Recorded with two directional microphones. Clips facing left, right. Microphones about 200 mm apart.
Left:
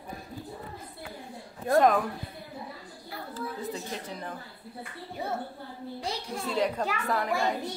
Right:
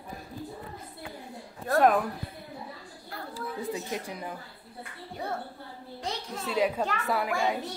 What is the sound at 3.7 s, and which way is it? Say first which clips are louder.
Speech: right 2 dB; 10° right (ahead or behind).